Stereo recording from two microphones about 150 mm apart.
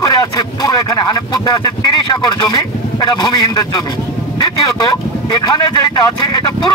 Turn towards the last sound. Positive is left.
turn(degrees=30)  # may be behind; listen again after turning